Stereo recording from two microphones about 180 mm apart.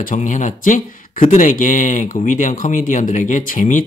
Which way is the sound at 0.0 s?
45° left (ahead or behind).